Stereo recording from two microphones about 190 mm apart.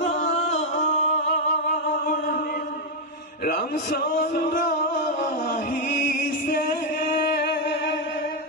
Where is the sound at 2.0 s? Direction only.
50° left (ahead or behind).